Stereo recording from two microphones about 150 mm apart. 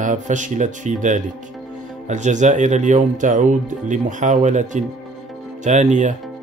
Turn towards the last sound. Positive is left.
turn(degrees=-55)  # may be behind; listen again after turning